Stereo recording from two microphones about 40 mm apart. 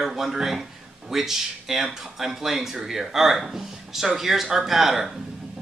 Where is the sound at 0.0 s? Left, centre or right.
Centre.